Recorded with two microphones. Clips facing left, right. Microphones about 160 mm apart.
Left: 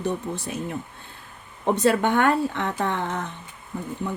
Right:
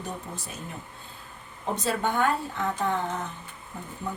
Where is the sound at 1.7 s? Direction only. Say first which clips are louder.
Left 6 dB; 65° left (ahead or behind).